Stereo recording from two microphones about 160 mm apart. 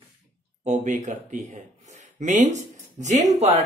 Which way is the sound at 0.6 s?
50° right (ahead or behind).